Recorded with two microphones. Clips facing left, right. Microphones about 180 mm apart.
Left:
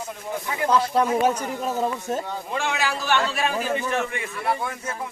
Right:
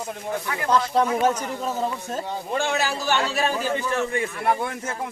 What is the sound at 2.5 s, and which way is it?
A man's voice, 40° right (ahead or behind).